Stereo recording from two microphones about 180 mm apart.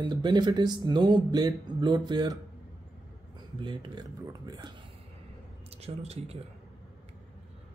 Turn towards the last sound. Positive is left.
turn(degrees=-35)  # may be behind; listen again after turning